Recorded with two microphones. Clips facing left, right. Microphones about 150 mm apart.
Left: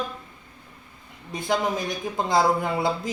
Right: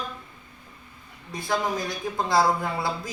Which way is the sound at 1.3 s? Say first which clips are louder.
Left 2 dB; 20° left (ahead or behind).